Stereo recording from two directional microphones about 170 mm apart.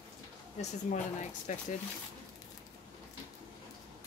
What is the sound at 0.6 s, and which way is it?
Speech, 45° left (ahead or behind).